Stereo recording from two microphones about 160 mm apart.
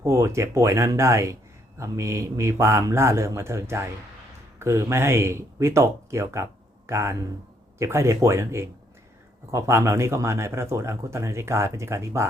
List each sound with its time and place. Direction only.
0.0 s speech: 20° right (ahead or behind)